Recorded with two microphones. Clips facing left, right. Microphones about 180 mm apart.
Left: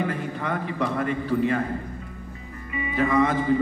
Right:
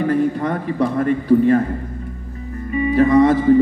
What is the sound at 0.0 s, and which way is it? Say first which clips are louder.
Speech: right 10 dB; 40° right (ahead or behind).